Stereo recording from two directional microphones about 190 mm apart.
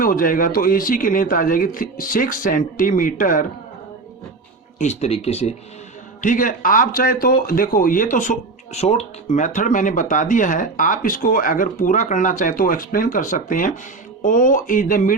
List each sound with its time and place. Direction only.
0.0 s speech: 50° left (ahead or behind)
4.8 s speech: 35° left (ahead or behind)
6.2 s speech: 45° left (ahead or behind)